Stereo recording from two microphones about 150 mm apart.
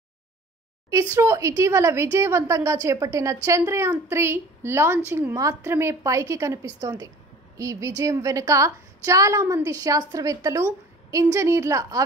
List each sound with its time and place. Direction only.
1.1 s a woman's voice: 20° right (ahead or behind)